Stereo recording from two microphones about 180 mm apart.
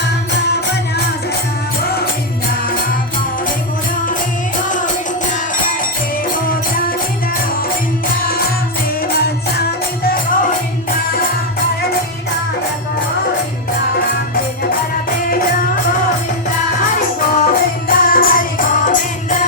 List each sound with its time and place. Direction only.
8.1 s music: 55° left (ahead or behind)
9.6 s music: 55° left (ahead or behind)
14.3 s music: 55° left (ahead or behind)
17.2 s music: 50° left (ahead or behind)